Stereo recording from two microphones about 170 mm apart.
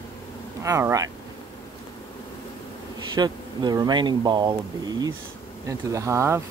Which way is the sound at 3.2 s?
25° right (ahead or behind).